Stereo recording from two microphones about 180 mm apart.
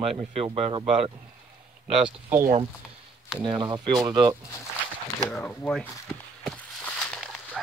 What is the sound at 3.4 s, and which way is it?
Speech, 25° right (ahead or behind).